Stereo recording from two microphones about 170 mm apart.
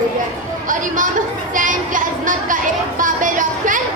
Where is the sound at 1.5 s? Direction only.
50° right (ahead or behind).